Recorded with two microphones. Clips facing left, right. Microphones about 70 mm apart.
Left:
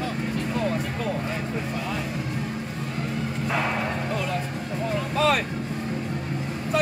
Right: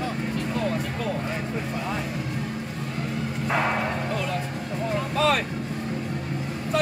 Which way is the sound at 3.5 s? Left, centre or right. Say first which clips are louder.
Right 2 dB; right.